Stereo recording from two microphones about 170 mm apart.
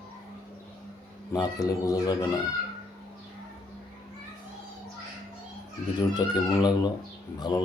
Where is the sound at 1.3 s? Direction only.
20° left (ahead or behind).